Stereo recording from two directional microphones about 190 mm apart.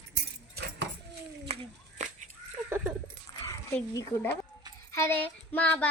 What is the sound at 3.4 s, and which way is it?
A child's voice, 15° left (ahead or behind).